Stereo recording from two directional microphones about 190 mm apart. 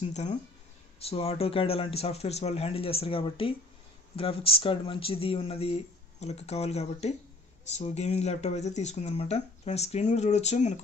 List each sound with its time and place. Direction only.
0.0 s speech: 35° left (ahead or behind)